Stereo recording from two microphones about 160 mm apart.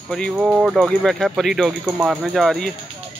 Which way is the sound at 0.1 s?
Centre (ahead or behind).